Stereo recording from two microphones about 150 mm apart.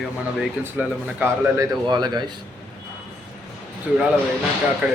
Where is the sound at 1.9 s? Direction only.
30° right (ahead or behind).